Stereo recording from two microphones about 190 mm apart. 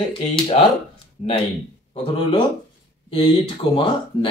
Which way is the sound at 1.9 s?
30° left (ahead or behind).